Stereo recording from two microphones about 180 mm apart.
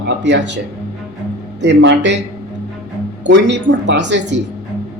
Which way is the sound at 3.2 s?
80° right.